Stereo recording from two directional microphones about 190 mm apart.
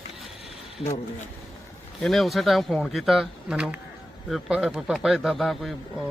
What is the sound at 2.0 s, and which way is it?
Speech, centre (ahead or behind).